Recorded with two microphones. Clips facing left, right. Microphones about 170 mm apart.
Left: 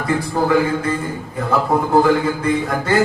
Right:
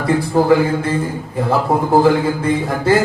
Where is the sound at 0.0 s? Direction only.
30° right (ahead or behind).